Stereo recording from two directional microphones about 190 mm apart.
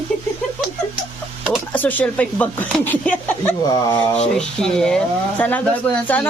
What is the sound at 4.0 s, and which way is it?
Speech, 5° left (ahead or behind).